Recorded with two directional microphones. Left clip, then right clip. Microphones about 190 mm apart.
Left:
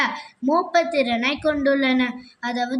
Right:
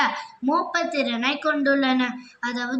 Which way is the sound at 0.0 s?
30° left (ahead or behind).